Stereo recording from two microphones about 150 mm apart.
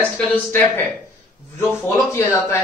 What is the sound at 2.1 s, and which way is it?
Speech, 20° left (ahead or behind).